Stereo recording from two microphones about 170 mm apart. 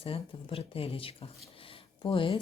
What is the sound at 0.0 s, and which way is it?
Speech, 35° left (ahead or behind).